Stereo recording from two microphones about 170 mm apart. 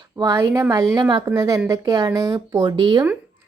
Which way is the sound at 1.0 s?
25° right (ahead or behind).